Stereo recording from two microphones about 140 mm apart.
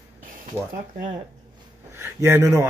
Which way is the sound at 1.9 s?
15° right (ahead or behind).